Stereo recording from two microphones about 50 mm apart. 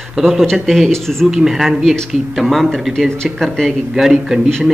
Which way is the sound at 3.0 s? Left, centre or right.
Centre.